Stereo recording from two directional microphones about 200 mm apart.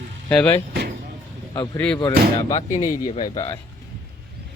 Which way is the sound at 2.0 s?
20° left (ahead or behind).